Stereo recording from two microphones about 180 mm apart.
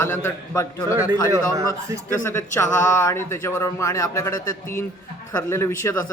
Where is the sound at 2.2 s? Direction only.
15° left (ahead or behind).